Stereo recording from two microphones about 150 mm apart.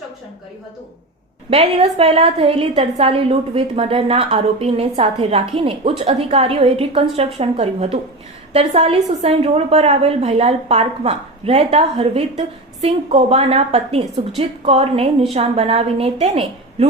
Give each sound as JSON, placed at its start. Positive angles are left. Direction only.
{"t": 1.5, "sound": "a woman's voice", "side_deg": -40}